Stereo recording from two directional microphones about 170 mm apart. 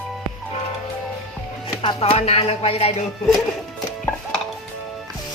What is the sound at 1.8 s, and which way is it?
Speech, 35° left (ahead or behind).